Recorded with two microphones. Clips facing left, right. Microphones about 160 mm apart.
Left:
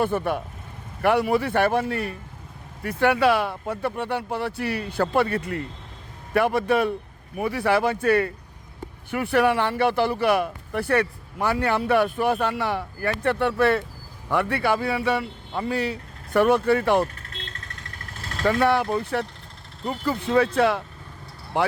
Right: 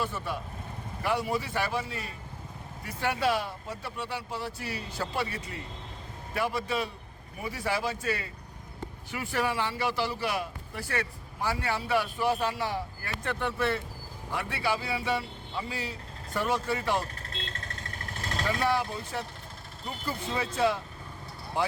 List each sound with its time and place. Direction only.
0.0 s speech: 55° left (ahead or behind)
18.4 s speech: 60° left (ahead or behind)